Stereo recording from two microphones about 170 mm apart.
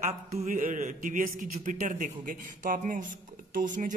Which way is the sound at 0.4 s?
50° right (ahead or behind).